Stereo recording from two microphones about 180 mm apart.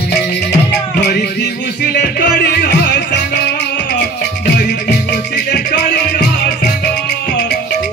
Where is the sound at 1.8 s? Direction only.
65° left (ahead or behind).